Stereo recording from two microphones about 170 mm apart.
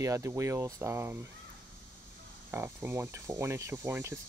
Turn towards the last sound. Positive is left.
turn(degrees=-15)  # may be behind; listen again after turning